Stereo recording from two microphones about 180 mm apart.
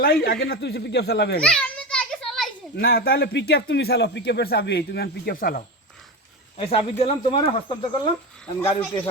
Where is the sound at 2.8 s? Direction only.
60° left (ahead or behind).